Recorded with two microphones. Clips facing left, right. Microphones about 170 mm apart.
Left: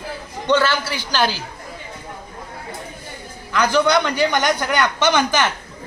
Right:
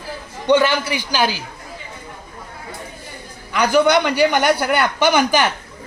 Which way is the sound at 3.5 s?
15° right (ahead or behind).